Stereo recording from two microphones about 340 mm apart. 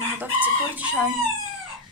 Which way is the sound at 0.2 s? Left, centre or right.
Centre.